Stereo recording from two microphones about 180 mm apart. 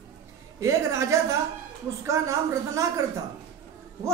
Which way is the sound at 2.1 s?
15° right (ahead or behind).